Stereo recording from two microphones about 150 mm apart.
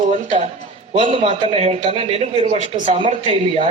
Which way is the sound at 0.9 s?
35° right (ahead or behind).